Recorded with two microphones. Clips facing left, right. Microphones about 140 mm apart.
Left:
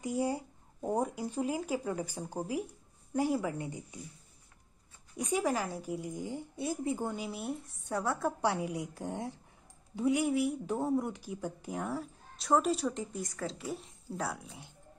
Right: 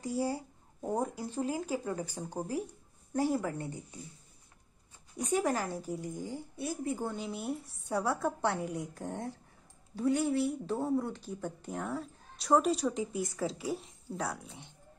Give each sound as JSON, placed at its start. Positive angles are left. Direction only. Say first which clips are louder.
{"t": 0.0, "sound": "a woman's voice", "louder": "left 1 dB", "side_deg": 20}
{"t": 5.3, "sound": "speech", "louder": "right 1 dB", "side_deg": 5}
{"t": 6.2, "sound": "a woman's voice", "louder": "left 1 dB", "side_deg": 20}
{"t": 7.2, "sound": "speech", "louder": "right 1 dB", "side_deg": 0}